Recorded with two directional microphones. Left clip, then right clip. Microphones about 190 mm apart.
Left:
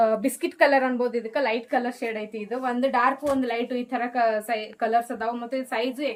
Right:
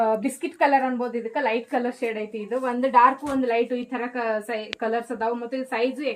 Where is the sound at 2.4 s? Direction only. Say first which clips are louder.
Right 1 dB; 35° left (ahead or behind).